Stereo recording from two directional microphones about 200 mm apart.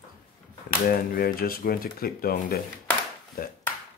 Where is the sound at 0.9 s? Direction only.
45° left (ahead or behind).